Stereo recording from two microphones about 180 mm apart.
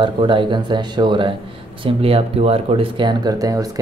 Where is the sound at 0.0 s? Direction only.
25° right (ahead or behind).